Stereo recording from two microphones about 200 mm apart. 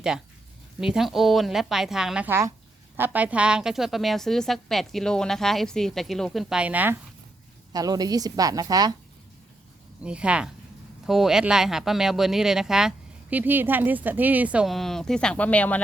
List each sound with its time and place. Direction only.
0.8 s a woman's voice: centre (ahead or behind)
7.7 s a woman's voice: 20° right (ahead or behind)
10.0 s a woman's voice: 5° right (ahead or behind)